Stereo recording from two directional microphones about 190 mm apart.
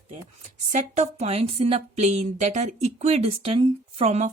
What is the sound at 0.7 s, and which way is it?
A woman's voice, 35° right (ahead or behind).